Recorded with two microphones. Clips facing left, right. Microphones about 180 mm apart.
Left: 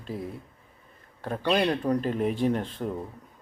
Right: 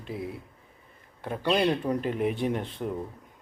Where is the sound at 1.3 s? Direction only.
10° right (ahead or behind).